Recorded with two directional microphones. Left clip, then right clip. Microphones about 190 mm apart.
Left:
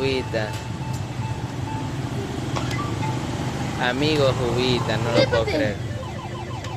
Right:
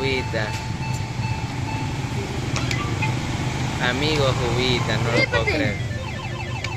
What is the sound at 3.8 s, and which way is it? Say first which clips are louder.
Speech: left 1 dB; 25° left (ahead or behind).